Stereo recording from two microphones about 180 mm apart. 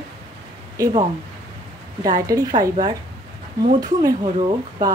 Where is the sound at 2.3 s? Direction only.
20° right (ahead or behind).